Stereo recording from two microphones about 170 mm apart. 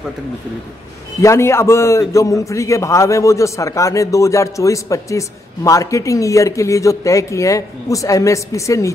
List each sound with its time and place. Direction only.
1.2 s a man's voice: 15° left (ahead or behind)